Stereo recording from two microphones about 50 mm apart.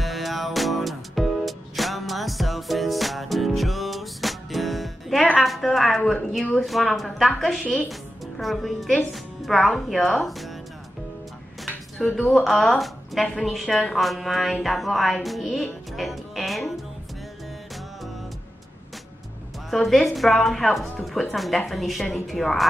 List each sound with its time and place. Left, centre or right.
0.0 s music: centre
6.6 s a woman's voice: centre
12.2 s speech: left
12.4 s a woman's voice: centre
16.0 s music: centre
19.7 s a woman's voice: centre